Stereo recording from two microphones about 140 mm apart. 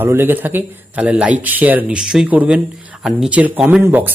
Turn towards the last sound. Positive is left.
turn(degrees=-15)  # may be behind; listen again after turning